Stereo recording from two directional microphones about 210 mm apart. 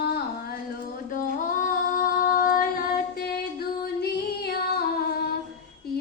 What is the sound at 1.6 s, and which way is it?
Female singing, 40° left (ahead or behind).